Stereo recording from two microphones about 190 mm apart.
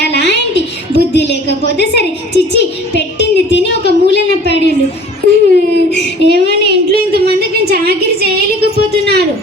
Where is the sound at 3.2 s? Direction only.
65° left (ahead or behind).